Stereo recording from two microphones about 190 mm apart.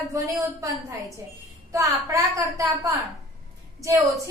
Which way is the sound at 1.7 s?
15° right (ahead or behind).